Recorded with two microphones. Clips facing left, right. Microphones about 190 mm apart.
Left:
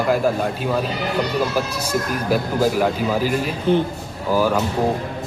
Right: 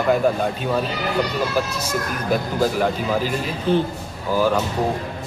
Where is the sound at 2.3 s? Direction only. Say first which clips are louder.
Left 1 dB; 5° left (ahead or behind).